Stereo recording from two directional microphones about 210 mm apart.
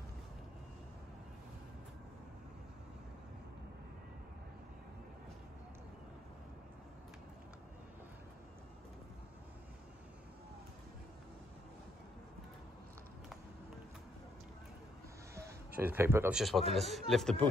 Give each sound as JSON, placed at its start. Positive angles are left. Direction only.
{"t": 15.3, "sound": "speech", "side_deg": -10}